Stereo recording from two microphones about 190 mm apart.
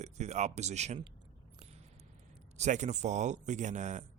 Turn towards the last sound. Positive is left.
turn(degrees=-40)  # may be behind; listen again after turning